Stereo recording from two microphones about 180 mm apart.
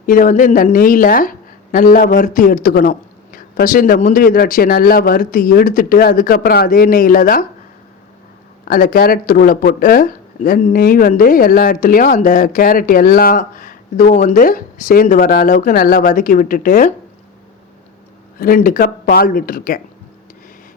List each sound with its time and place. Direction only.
0.0 s speech: 45° left (ahead or behind)
8.6 s speech: 50° left (ahead or behind)
18.3 s speech: 55° left (ahead or behind)